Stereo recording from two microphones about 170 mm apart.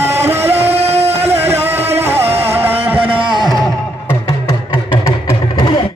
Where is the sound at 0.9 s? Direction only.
40° right (ahead or behind).